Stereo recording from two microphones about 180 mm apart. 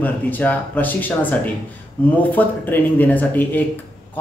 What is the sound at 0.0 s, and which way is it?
Speech, 10° left (ahead or behind).